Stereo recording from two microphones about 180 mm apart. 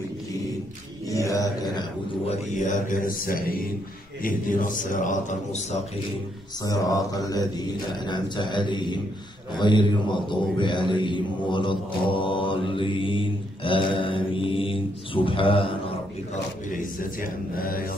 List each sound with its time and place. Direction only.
1.0 s a sound: 20° left (ahead or behind)
2.2 s a man's voice: 45° left (ahead or behind)
6.6 s a man's voice: 20° left (ahead or behind)
16.7 s a man's voice: 50° left (ahead or behind)